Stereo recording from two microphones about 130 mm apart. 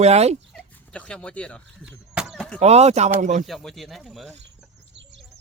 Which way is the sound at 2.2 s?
Centre (ahead or behind).